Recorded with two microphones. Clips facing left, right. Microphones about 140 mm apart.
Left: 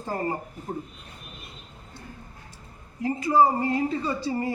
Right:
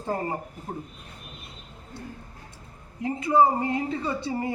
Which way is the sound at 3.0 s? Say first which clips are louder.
Even; 20° right (ahead or behind).